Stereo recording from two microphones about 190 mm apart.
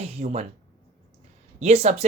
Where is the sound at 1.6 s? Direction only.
35° right (ahead or behind).